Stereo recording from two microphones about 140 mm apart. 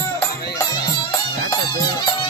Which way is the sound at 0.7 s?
30° left (ahead or behind).